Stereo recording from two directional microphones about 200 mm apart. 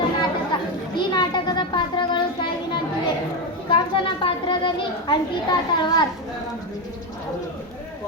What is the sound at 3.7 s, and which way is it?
A child's voice, 25° left (ahead or behind).